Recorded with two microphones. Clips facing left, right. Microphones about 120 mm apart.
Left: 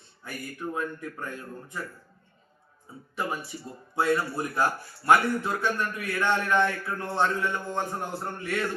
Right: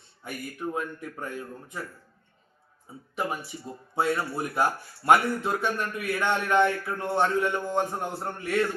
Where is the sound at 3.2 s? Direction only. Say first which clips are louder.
Right 1 dB; 15° right (ahead or behind).